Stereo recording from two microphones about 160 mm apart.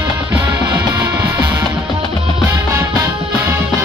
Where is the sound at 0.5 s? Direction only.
25° right (ahead or behind).